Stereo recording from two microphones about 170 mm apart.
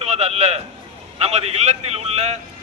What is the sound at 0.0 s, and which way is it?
A man's voice, 40° right (ahead or behind).